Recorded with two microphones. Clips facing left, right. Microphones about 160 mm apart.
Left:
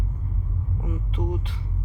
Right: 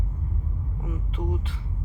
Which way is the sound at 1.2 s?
20° left (ahead or behind).